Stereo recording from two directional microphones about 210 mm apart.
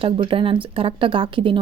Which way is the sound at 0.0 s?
25° right (ahead or behind).